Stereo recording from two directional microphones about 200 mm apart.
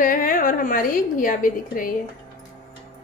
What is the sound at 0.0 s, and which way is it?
A woman's voice, 45° left (ahead or behind).